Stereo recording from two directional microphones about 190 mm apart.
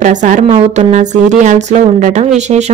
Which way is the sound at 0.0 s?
40° right (ahead or behind).